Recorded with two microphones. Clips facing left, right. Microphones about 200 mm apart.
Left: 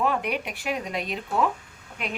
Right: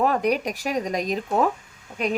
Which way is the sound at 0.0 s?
40° right (ahead or behind).